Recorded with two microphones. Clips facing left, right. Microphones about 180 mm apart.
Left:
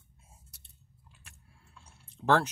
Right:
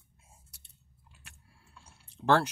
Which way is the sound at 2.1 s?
Centre (ahead or behind).